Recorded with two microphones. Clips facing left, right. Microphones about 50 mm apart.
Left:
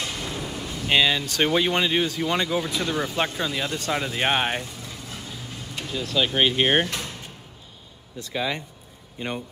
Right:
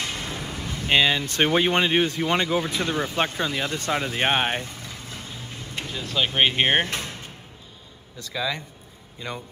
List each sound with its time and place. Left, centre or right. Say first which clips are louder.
0.0 s speech: even; right
8.2 s speech: left 1 dB; left